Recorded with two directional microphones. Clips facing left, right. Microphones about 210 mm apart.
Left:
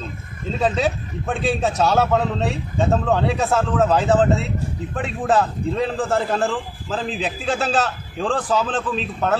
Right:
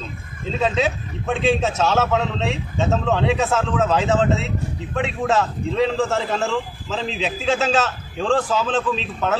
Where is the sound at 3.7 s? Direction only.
Centre (ahead or behind).